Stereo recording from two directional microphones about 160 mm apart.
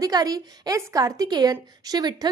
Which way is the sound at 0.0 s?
25° right (ahead or behind).